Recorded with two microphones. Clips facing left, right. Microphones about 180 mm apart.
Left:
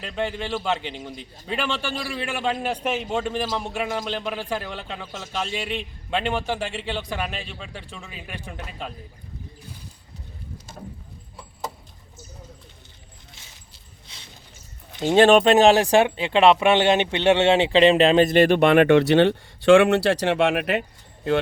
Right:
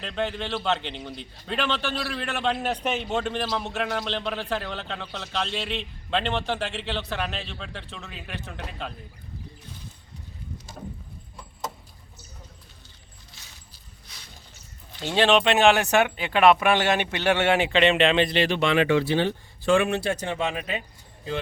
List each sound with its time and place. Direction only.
0.0 s a man's voice: 5° left (ahead or behind)
15.0 s speech: 45° left (ahead or behind); by 20.8 s 70° left (ahead or behind)